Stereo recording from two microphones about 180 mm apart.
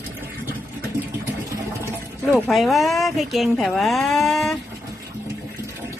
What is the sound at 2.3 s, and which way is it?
Speech, 5° left (ahead or behind).